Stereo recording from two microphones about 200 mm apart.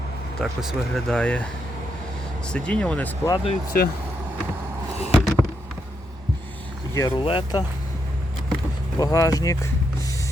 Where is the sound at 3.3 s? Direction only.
30° left (ahead or behind).